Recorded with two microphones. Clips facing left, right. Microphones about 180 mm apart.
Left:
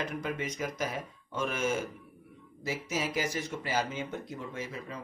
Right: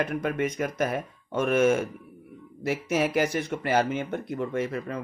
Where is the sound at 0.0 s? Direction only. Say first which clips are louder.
Right 8 dB; 60° right (ahead or behind).